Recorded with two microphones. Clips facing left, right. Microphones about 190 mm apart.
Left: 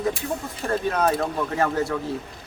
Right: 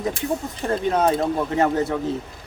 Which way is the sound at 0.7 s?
20° right (ahead or behind).